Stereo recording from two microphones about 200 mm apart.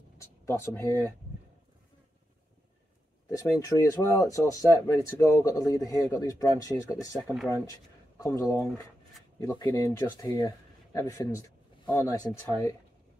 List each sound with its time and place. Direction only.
0.5 s speech: 15° left (ahead or behind)
3.3 s speech: 15° left (ahead or behind)